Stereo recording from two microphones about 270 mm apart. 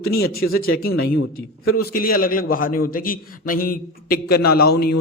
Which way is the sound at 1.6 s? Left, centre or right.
Left.